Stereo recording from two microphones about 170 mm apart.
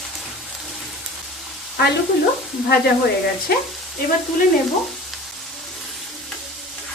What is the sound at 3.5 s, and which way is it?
Frying, 60° left (ahead or behind).